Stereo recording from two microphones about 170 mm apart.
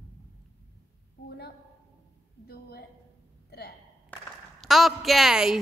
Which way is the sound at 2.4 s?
70° left (ahead or behind).